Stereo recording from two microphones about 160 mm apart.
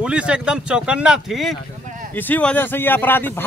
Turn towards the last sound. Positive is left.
turn(degrees=10)  # may be behind; listen again after turning